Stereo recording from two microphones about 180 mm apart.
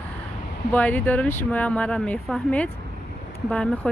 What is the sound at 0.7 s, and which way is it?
Speech, 10° left (ahead or behind).